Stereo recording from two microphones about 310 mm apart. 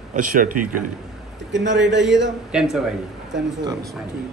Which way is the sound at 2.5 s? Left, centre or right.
Centre.